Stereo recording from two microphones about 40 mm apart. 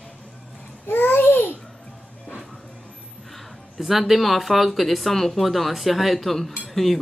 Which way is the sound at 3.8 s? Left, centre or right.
Centre.